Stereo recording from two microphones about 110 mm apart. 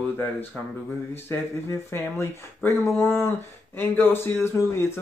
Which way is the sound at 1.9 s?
25° left (ahead or behind).